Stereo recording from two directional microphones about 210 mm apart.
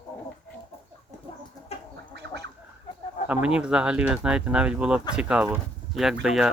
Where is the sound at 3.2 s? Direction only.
5° right (ahead or behind).